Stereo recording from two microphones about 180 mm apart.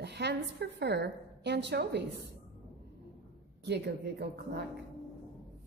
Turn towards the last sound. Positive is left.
turn(degrees=-65)  # may be behind; listen again after turning